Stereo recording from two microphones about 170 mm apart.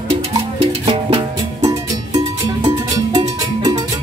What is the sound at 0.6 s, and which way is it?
Music, 30° right (ahead or behind).